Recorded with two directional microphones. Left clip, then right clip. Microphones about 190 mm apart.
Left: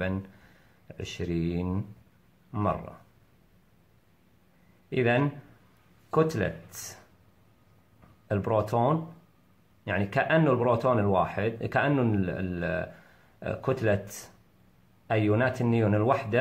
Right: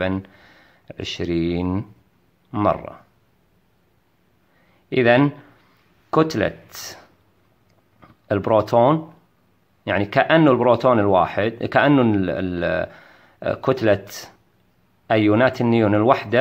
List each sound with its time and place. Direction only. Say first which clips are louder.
0.8 s speech: right 9 dB; 35° right (ahead or behind)
4.8 s a man's voice: right 10 dB; 35° right (ahead or behind)
8.3 s speech: right 10 dB; 35° right (ahead or behind)